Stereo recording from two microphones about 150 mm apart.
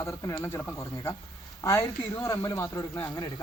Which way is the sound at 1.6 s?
20° left (ahead or behind).